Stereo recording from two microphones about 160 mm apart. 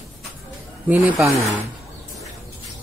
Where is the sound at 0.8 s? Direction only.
10° right (ahead or behind).